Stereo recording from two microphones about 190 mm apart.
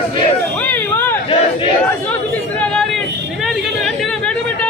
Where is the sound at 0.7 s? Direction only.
10° left (ahead or behind).